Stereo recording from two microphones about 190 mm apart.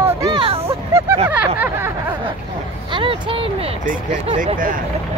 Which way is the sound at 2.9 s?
25° right (ahead or behind).